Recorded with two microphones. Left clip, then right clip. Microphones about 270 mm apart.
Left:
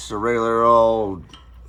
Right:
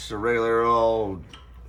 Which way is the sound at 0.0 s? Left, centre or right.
Centre.